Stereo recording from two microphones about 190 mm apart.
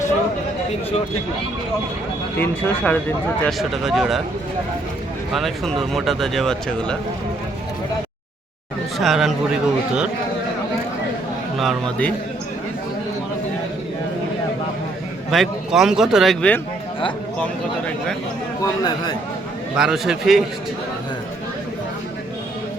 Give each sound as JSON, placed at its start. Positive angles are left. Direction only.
{"t": 2.4, "sound": "speech", "side_deg": 10}
{"t": 3.4, "sound": "speech", "side_deg": 0}
{"t": 5.3, "sound": "speech", "side_deg": 0}
{"t": 9.0, "sound": "speech", "side_deg": 0}
{"t": 11.5, "sound": "speech", "side_deg": 0}
{"t": 15.3, "sound": "speech", "side_deg": 0}
{"t": 18.6, "sound": "a man's voice", "side_deg": 20}
{"t": 19.7, "sound": "speech", "side_deg": -5}